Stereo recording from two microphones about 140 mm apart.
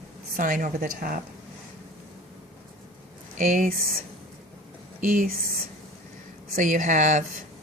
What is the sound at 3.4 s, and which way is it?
Speech, 70° right (ahead or behind).